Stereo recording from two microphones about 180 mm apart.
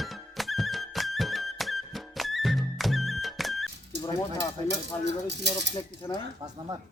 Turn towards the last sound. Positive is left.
turn(degrees=25)  # may be behind; listen again after turning